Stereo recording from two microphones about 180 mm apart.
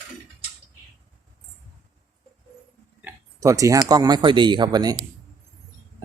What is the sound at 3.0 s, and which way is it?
Speech, 15° right (ahead or behind).